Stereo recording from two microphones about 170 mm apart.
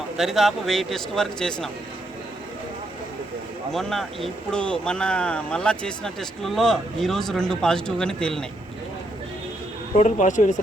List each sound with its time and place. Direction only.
0.2 s speech: centre (ahead or behind)
3.7 s speech: centre (ahead or behind)
10.0 s speech: 45° left (ahead or behind)